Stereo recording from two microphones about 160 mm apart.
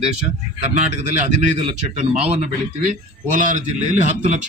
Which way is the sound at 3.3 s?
55° right (ahead or behind).